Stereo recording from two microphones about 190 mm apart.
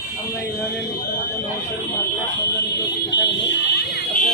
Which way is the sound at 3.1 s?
65° left (ahead or behind).